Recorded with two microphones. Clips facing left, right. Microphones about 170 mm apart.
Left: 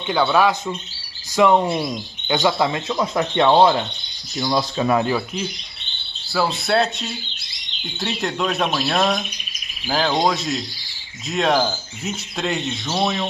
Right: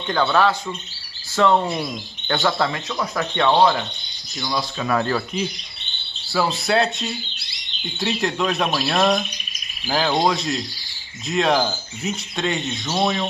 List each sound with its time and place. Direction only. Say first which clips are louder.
0.0 s speech: left 1 dB; 10° left (ahead or behind)
4.4 s speech: left 5 dB; 35° left (ahead or behind)
6.3 s speech: even; centre (ahead or behind)